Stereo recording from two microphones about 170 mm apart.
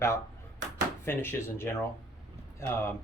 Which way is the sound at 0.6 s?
90° right.